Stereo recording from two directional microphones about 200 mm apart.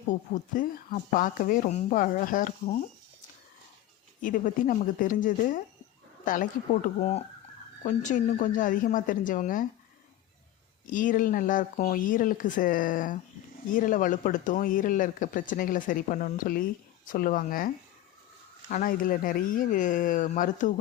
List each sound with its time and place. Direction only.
0.1 s speech: 40° left (ahead or behind)
4.2 s speech: 40° left (ahead or behind)
7.9 s speech: 40° left (ahead or behind)
10.9 s speech: 40° left (ahead or behind)
18.7 s speech: 45° left (ahead or behind)